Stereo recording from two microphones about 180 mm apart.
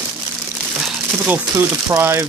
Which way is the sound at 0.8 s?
10° right (ahead or behind).